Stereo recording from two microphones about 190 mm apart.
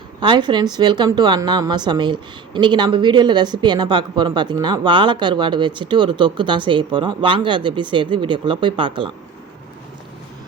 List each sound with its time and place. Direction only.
0.2 s a woman's voice: 25° right (ahead or behind)